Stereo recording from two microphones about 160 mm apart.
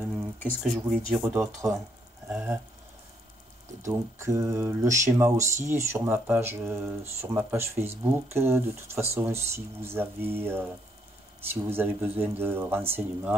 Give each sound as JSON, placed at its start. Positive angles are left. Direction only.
{"t": 0.1, "sound": "a sound", "side_deg": 5}
{"t": 0.7, "sound": "speech", "side_deg": 0}
{"t": 3.8, "sound": "speech", "side_deg": -20}